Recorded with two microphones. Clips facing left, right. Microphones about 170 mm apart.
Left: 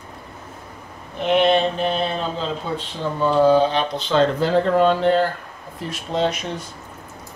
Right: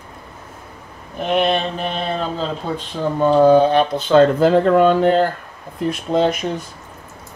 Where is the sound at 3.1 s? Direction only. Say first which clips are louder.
Right 4 dB; 50° right (ahead or behind).